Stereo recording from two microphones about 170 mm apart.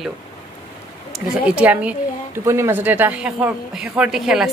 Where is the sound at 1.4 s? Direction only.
10° right (ahead or behind).